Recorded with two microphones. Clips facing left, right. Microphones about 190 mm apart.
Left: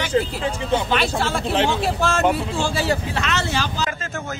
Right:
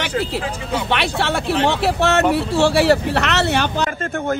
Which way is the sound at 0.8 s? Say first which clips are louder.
Right 1 dB; 70° right (ahead or behind).